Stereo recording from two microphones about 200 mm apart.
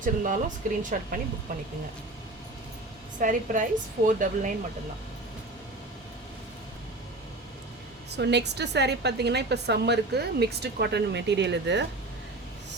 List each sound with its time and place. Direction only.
0.0 s a woman's voice: 40° right (ahead or behind)
3.2 s a woman's voice: 40° right (ahead or behind)
8.1 s a woman's voice: 55° right (ahead or behind)